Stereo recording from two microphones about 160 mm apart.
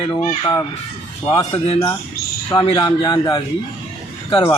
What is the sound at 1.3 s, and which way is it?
A man's voice, 35° left (ahead or behind).